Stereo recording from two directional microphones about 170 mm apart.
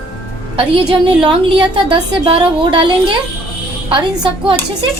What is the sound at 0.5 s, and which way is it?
A woman's voice, 30° right (ahead or behind).